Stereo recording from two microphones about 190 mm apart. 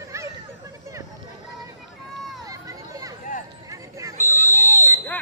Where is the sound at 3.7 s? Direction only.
15° right (ahead or behind).